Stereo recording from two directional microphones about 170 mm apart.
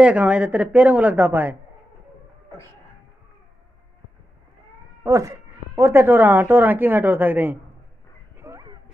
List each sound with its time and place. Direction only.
0.0 s a woman's voice: 5° right (ahead or behind)
5.0 s a woman's voice: 20° right (ahead or behind)
8.4 s dog: 15° right (ahead or behind)